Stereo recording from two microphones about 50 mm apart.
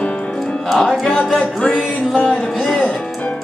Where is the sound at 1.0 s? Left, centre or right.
Left.